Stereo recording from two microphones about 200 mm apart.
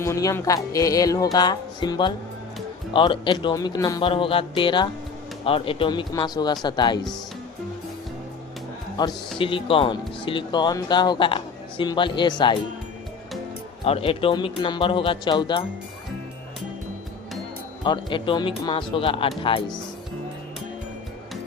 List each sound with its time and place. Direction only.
0.0 s speech: 15° left (ahead or behind)
9.4 s speech: 25° left (ahead or behind)
13.8 s speech: 30° left (ahead or behind)
17.8 s speech: 25° left (ahead or behind)